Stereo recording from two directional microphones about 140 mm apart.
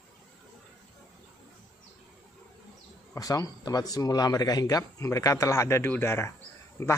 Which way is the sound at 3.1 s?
25° left (ahead or behind).